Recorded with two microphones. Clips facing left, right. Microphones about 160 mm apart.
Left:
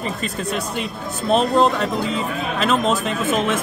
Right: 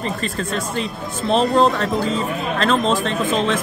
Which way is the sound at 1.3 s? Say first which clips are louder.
Even; centre (ahead or behind).